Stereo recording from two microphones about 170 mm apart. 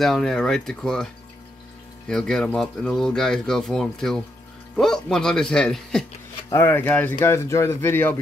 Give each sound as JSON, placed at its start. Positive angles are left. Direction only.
{"t": 0.0, "sound": "speech", "side_deg": 0}
{"t": 6.5, "sound": "speech", "side_deg": 15}